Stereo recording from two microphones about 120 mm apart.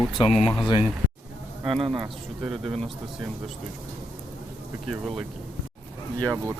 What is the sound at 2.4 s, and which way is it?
Speech, centre (ahead or behind).